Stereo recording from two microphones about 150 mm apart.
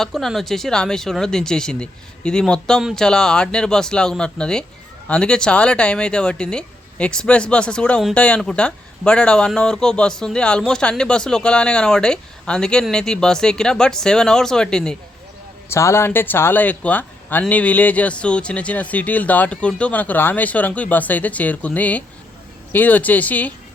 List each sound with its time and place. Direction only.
0.0 s speech: centre (ahead or behind)
15.7 s speech: 20° left (ahead or behind)